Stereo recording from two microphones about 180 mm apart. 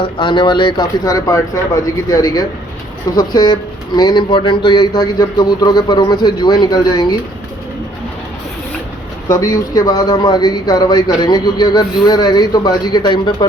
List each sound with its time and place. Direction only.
0.0 s speech: 25° left (ahead or behind)
9.3 s speech: 20° left (ahead or behind)